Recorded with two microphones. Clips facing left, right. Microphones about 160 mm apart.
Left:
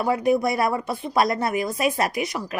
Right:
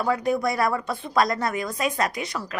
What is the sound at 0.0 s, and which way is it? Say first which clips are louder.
A woman's voice: left 3 dB; 25° left (ahead or behind).